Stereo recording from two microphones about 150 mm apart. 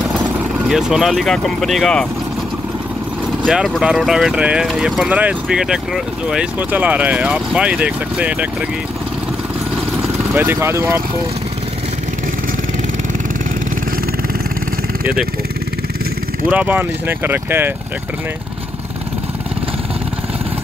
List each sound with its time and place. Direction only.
0.7 s speech: 5° right (ahead or behind)
3.4 s speech: centre (ahead or behind)
10.3 s speech: 15° right (ahead or behind)
16.4 s speech: 10° right (ahead or behind)